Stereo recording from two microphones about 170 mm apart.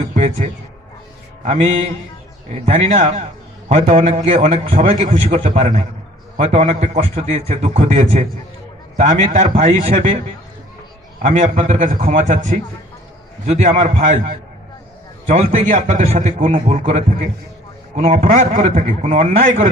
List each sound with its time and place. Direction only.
0.1 s a sound: 45° right (ahead or behind)
1.4 s a man's voice: 45° right (ahead or behind)
11.2 s a man's voice: 50° right (ahead or behind)